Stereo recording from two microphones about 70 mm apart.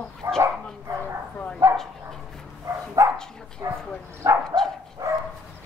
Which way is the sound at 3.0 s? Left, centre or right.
Right.